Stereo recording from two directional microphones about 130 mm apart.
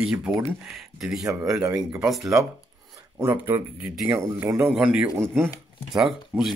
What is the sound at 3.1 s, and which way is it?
Speech, 20° right (ahead or behind).